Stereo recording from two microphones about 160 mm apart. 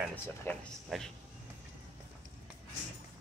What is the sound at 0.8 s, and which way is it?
Speech, centre (ahead or behind).